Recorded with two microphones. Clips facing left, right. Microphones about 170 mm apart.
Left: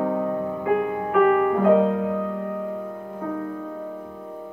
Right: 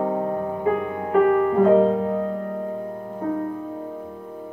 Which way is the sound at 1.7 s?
35° right (ahead or behind).